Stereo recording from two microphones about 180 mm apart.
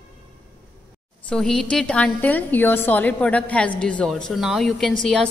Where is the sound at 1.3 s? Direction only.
5° left (ahead or behind).